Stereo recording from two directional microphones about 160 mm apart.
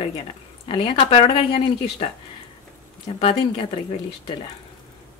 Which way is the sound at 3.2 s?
35° left (ahead or behind).